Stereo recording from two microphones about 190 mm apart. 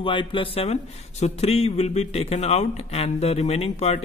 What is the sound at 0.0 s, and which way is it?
A man's voice, 25° left (ahead or behind).